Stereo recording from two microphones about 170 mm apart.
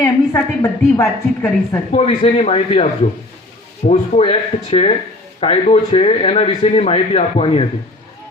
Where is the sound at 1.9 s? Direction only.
35° left (ahead or behind).